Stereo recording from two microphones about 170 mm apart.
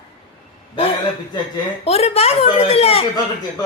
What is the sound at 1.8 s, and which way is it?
Speech, 40° left (ahead or behind).